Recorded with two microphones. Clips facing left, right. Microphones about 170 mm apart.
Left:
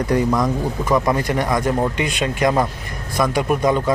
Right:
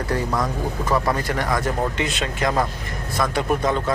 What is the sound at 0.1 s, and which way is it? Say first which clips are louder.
Speech: left 6 dB; 15° left (ahead or behind).